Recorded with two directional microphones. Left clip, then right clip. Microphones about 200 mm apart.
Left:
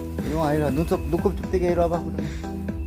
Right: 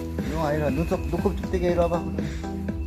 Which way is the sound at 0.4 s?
50° left (ahead or behind).